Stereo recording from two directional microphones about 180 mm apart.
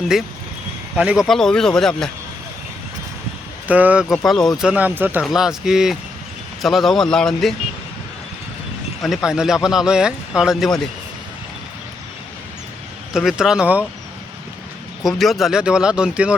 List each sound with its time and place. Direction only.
0.9 s speech: 5° right (ahead or behind)
3.7 s speech: 10° right (ahead or behind)
9.0 s speech: centre (ahead or behind)
13.1 s speech: 5° right (ahead or behind)
15.0 s speech: centre (ahead or behind)